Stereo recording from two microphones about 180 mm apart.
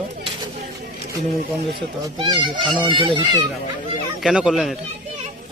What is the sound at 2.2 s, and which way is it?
Speech, 25° right (ahead or behind).